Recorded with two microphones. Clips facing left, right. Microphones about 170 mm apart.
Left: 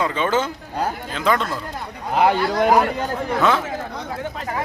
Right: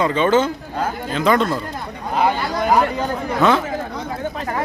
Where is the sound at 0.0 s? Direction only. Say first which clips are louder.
Right 5 dB; 5° left (ahead or behind).